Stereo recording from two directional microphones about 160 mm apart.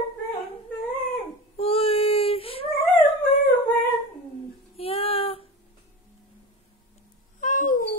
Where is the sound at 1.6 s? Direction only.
35° left (ahead or behind).